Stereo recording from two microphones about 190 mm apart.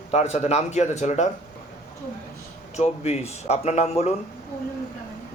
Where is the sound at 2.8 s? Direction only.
35° left (ahead or behind).